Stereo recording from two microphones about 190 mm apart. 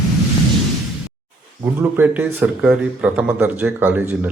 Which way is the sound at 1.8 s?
10° right (ahead or behind).